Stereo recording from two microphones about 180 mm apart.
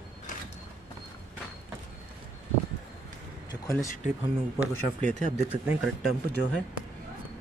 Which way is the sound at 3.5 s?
15° left (ahead or behind).